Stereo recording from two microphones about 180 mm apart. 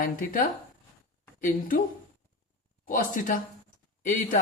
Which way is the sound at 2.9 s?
45° left (ahead or behind).